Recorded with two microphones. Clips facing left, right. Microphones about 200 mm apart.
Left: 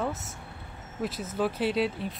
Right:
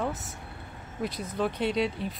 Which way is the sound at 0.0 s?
Centre (ahead or behind).